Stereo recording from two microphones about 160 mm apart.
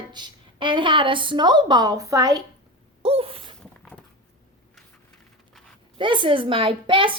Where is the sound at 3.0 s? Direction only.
35° right (ahead or behind).